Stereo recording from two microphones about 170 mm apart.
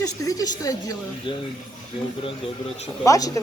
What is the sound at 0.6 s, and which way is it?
Speech, 20° left (ahead or behind).